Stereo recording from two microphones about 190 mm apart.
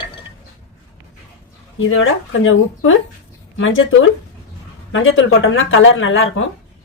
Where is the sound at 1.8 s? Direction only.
90° left.